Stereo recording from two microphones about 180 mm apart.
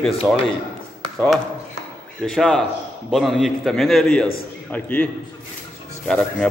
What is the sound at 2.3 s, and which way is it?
A man's voice, 5° left (ahead or behind).